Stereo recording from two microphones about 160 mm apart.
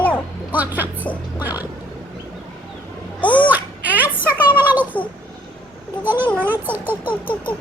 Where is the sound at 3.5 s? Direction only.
10° right (ahead or behind).